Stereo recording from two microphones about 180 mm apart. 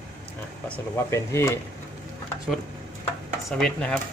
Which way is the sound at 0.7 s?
15° left (ahead or behind).